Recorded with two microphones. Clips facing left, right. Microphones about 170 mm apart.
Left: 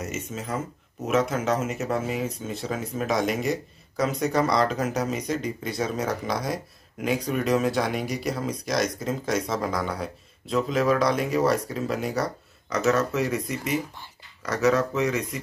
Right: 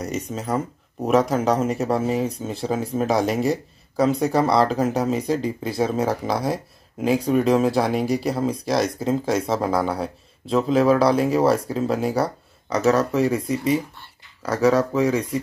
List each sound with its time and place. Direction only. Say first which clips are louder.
0.0 s speech: right 5 dB; 35° right (ahead or behind)